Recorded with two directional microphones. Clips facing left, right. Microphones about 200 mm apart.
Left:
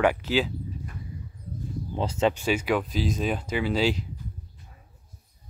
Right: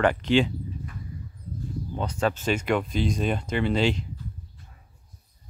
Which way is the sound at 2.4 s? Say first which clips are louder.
Even; 5° left (ahead or behind).